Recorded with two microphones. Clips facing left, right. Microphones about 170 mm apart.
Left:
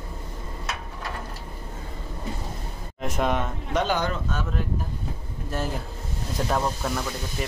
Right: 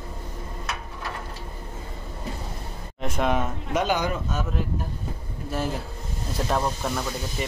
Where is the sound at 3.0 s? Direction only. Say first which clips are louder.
Right 1 dB; centre (ahead or behind).